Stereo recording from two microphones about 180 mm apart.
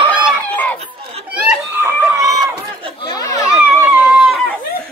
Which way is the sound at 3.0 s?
20° left (ahead or behind).